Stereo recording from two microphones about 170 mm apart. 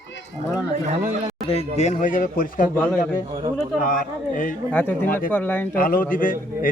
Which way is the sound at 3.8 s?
55° left (ahead or behind).